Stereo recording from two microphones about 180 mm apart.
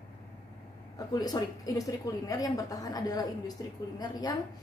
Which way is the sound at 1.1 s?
20° left (ahead or behind).